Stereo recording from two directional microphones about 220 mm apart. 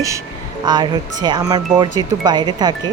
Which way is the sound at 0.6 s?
20° right (ahead or behind).